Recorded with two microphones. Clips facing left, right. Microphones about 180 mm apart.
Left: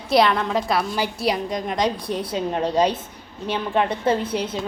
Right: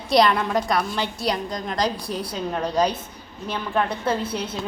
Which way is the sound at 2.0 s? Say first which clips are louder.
Left 3 dB; 25° left (ahead or behind).